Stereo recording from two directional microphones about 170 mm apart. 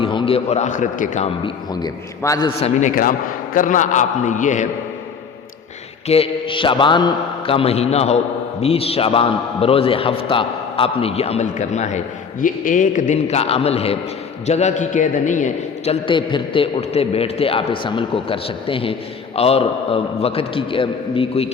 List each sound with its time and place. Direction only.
0.0 s a man's voice: 30° left (ahead or behind); by 1.3 s 45° left (ahead or behind)
1.5 s a man's voice: 25° left (ahead or behind)
2.6 s a man's voice: 40° left (ahead or behind)
3.5 s a man's voice: 50° left (ahead or behind)
6.1 s a man's voice: 30° left (ahead or behind)